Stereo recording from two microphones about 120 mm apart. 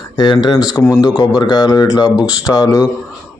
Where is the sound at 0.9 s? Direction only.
35° left (ahead or behind).